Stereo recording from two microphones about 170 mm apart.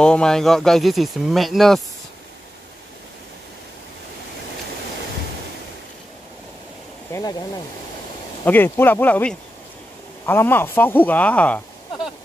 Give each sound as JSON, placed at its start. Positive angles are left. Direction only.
{"t": 0.0, "sound": "speech", "side_deg": 5}
{"t": 7.1, "sound": "a sound", "side_deg": 20}
{"t": 8.5, "sound": "speech", "side_deg": 10}